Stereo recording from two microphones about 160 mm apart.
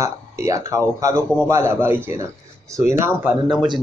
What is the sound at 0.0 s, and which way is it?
A man's voice, 20° right (ahead or behind).